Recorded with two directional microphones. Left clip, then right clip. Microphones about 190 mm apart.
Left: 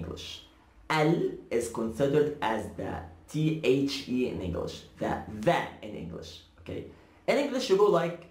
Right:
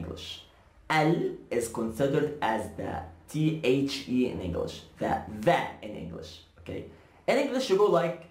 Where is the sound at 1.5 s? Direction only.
10° right (ahead or behind).